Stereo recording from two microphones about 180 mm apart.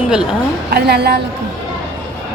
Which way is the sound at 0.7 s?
60° right (ahead or behind).